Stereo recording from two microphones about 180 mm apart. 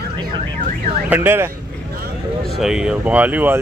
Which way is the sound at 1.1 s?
10° right (ahead or behind).